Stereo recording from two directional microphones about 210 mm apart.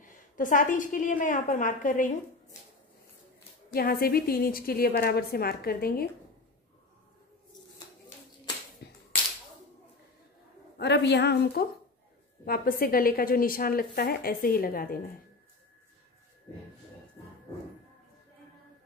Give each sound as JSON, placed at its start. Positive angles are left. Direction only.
{"t": 0.0, "sound": "a woman's voice", "side_deg": 40}
{"t": 3.7, "sound": "a woman's voice", "side_deg": 45}
{"t": 8.8, "sound": "whip", "side_deg": 50}
{"t": 10.8, "sound": "a woman's voice", "side_deg": 55}